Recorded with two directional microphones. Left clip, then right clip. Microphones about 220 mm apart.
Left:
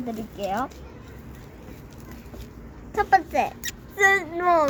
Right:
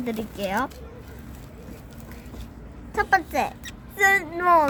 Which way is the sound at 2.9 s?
5° left (ahead or behind).